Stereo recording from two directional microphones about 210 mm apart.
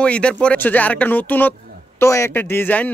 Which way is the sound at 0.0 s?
5° left (ahead or behind).